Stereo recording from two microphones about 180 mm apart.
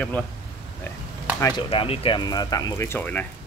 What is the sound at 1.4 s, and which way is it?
Speech, 25° left (ahead or behind).